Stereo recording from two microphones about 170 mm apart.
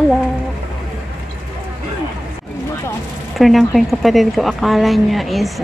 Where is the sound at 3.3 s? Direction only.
Centre (ahead or behind).